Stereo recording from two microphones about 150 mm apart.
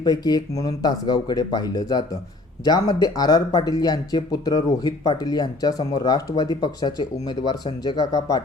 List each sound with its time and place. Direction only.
0.0 s speech: 25° left (ahead or behind)